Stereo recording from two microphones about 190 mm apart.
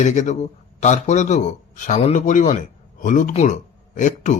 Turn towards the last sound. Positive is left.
turn(degrees=40)  # may be behind; listen again after turning